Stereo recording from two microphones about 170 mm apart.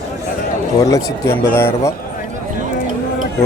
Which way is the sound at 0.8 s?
20° left (ahead or behind).